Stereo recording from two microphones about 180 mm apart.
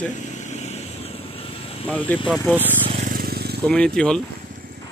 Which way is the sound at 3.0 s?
55° right (ahead or behind).